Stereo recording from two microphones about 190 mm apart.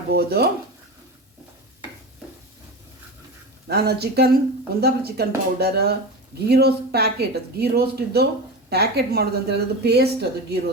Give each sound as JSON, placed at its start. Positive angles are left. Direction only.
{"t": 0.1, "sound": "a woman's voice", "side_deg": -55}
{"t": 3.7, "sound": "a woman's voice", "side_deg": -60}